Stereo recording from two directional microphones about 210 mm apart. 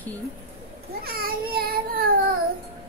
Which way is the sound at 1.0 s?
45° right (ahead or behind).